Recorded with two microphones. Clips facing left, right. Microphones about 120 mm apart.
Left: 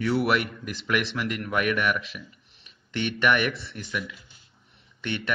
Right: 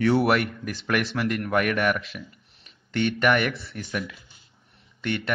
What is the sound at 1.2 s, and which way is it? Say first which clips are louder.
Speech: right 3 dB; 35° right (ahead or behind).